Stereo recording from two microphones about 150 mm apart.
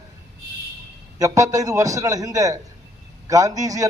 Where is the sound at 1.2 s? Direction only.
20° right (ahead or behind).